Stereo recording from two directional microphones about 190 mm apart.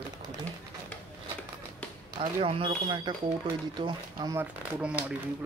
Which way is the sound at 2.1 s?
30° right (ahead or behind).